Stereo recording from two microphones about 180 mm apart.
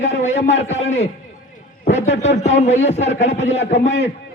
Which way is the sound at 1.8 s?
40° left (ahead or behind).